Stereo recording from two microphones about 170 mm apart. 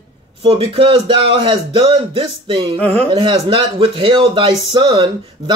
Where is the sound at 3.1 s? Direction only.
30° right (ahead or behind).